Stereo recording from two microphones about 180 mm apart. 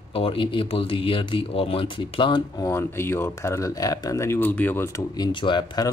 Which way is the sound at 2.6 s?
15° left (ahead or behind).